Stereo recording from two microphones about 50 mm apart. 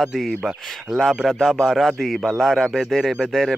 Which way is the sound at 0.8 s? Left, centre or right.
Centre.